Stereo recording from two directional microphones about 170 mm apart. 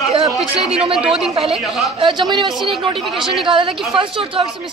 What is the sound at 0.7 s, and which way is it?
A woman's voice, 30° right (ahead or behind).